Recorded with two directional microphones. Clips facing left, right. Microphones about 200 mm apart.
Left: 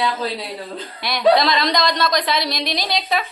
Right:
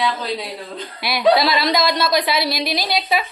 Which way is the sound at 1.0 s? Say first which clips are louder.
Even; 5° right (ahead or behind).